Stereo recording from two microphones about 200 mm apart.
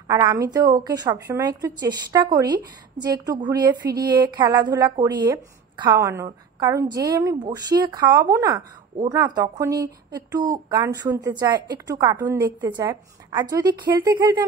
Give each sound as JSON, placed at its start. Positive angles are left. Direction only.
{"t": 0.1, "sound": "a woman's voice", "side_deg": -15}